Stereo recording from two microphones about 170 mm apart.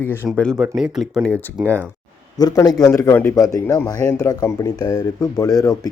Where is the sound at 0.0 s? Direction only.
15° left (ahead or behind); by 1.9 s 10° right (ahead or behind).